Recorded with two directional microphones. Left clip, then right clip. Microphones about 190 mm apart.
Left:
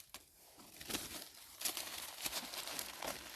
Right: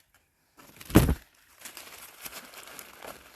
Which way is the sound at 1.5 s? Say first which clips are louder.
Left 2 dB; 10° right (ahead or behind).